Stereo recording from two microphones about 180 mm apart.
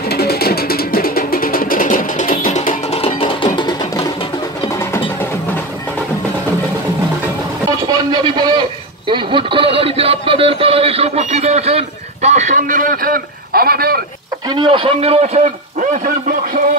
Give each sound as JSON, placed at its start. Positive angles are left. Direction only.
{"t": 0.1, "sound": "music", "side_deg": 60}
{"t": 3.0, "sound": "music", "side_deg": 30}
{"t": 7.7, "sound": "a sound", "side_deg": -25}
{"t": 14.5, "sound": "a man's voice", "side_deg": -25}